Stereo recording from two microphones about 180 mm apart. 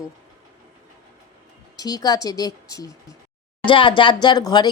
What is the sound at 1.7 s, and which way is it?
Speech, 20° left (ahead or behind).